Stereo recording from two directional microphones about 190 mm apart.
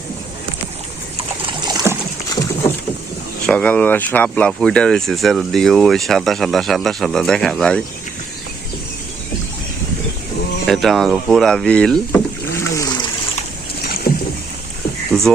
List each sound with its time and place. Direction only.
1.5 s a sound: 20° right (ahead or behind)
3.4 s speech: 5° left (ahead or behind)
10.7 s speech: centre (ahead or behind); by 13.1 s 20° left (ahead or behind)
13.8 s rowboat: 55° left (ahead or behind)